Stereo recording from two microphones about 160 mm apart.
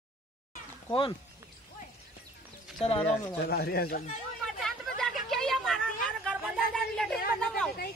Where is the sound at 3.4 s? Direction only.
75° left (ahead or behind).